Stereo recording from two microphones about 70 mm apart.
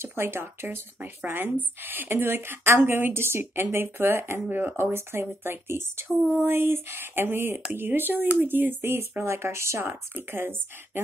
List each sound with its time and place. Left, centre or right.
0.0 s speech: right